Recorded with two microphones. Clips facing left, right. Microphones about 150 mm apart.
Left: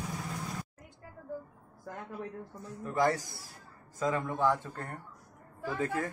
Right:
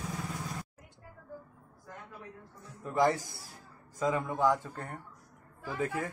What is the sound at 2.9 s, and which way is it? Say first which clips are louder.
Speech: right 1 dB; 15° right (ahead or behind).